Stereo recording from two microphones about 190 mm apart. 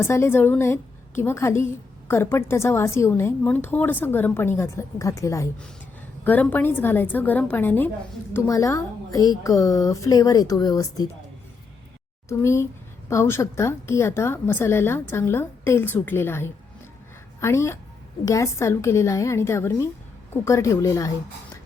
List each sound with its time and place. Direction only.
0.0 s a woman's voice: 10° left (ahead or behind)
12.3 s a woman's voice: 15° left (ahead or behind)